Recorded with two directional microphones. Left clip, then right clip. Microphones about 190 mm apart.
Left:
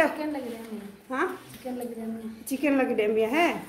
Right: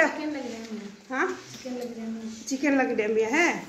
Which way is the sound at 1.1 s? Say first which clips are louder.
Right 1 dB; 45° left (ahead or behind).